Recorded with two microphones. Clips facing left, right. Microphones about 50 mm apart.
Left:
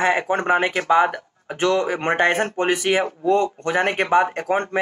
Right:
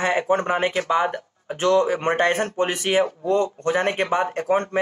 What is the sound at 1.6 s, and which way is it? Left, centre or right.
Speech, left.